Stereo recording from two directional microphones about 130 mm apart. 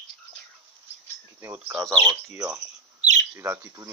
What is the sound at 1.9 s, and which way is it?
Speech, 35° right (ahead or behind).